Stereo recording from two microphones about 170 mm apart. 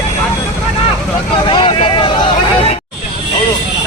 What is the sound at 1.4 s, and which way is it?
Speech, 30° left (ahead or behind).